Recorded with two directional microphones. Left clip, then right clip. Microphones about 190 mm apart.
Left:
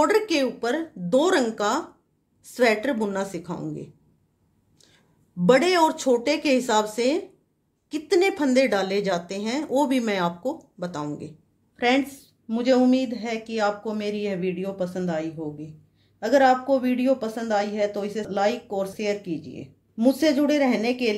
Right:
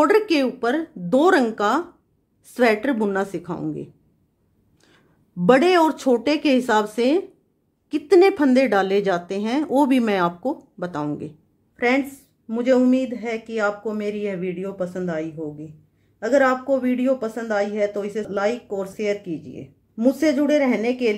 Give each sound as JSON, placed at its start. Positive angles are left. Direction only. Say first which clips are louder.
{"t": 0.0, "sound": "a woman's voice", "louder": "right 3 dB", "side_deg": -35}
{"t": 11.7, "sound": "a sound", "louder": "right 1 dB", "side_deg": -20}
{"t": 12.4, "sound": "speech", "louder": "right 2 dB", "side_deg": -20}
{"t": 16.6, "sound": "speech", "louder": "right 1 dB", "side_deg": -20}